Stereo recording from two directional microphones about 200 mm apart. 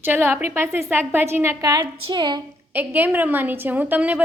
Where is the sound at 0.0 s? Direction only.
10° right (ahead or behind).